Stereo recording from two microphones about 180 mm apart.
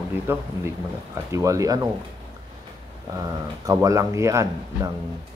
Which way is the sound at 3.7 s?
15° right (ahead or behind).